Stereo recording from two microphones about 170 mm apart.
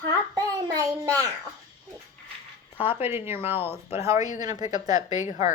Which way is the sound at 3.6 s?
35° left (ahead or behind).